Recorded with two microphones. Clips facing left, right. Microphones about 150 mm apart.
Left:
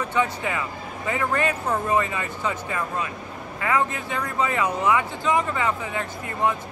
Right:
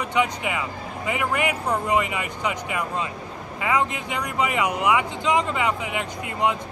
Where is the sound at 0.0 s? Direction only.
15° right (ahead or behind).